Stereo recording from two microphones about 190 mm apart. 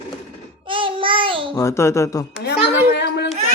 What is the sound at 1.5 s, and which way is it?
Speech, 15° left (ahead or behind).